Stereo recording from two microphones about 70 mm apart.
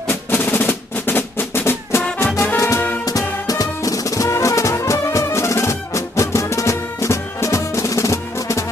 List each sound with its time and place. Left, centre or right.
0.1 s drum: left
2.4 s music: left
3.1 s music: left